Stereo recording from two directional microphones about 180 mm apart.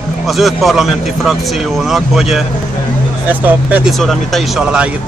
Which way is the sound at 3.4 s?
10° right (ahead or behind).